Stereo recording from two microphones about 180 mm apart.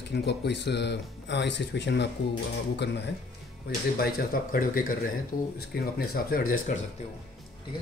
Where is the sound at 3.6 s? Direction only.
55° left (ahead or behind).